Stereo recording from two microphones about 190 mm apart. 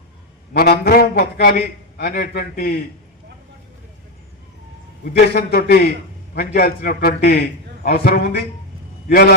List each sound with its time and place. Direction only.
0.5 s a man's voice: 55° left (ahead or behind)
5.0 s a man's voice: 55° left (ahead or behind)